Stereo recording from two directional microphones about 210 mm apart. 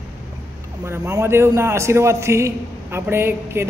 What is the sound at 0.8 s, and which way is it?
A man's voice, 15° right (ahead or behind).